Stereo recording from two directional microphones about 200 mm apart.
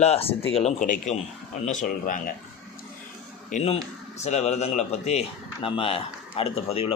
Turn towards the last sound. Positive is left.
turn(degrees=30)  # may be behind; listen again after turning